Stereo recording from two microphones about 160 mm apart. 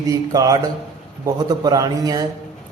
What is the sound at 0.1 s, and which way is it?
A man's voice, 20° right (ahead or behind).